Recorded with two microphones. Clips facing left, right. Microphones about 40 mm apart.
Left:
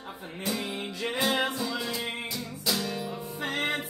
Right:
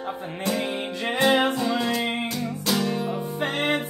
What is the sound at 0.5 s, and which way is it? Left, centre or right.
Music, right.